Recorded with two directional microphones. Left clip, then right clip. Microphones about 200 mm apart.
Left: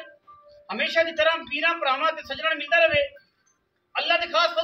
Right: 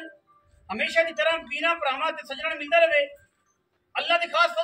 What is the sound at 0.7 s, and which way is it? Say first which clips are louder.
A man's voice: left 1 dB; centre (ahead or behind).